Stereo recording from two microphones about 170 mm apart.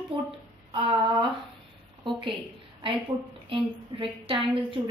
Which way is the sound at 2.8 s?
30° right (ahead or behind).